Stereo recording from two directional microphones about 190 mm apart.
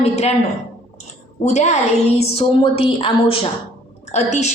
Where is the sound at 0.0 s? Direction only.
35° left (ahead or behind).